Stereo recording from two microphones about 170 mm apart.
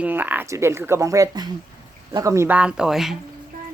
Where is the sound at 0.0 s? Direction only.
10° right (ahead or behind).